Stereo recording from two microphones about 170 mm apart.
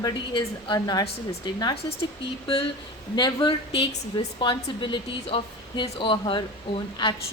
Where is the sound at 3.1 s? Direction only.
25° left (ahead or behind).